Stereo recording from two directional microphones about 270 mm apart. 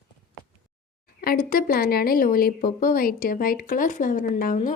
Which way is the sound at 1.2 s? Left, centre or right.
Left.